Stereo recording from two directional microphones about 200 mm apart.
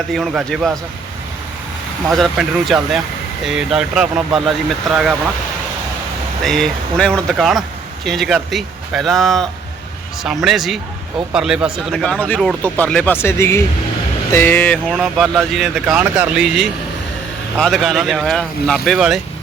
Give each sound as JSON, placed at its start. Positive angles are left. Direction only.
{"t": 0.1, "sound": "speech", "side_deg": 0}
{"t": 2.0, "sound": "speech", "side_deg": 0}
{"t": 6.4, "sound": "speech", "side_deg": 0}